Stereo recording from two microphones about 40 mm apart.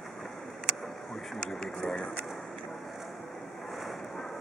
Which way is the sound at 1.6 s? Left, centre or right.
Centre.